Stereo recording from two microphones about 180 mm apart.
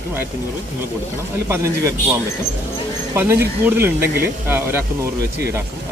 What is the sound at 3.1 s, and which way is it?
Speech, 15° right (ahead or behind).